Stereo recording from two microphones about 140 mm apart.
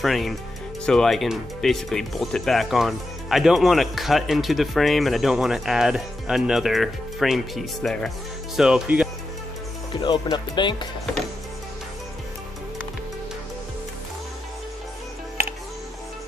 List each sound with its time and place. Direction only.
0.0 s speech: centre (ahead or behind)
9.9 s speech: 35° left (ahead or behind)